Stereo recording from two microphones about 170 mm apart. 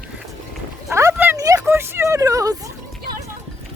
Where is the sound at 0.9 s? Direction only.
15° right (ahead or behind).